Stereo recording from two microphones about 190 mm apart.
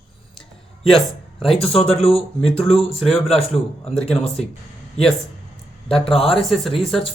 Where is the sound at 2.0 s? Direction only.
30° left (ahead or behind).